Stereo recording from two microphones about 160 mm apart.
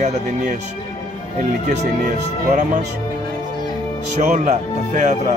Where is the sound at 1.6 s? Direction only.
55° right (ahead or behind).